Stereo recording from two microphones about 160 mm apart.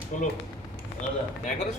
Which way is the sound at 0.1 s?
50° left (ahead or behind).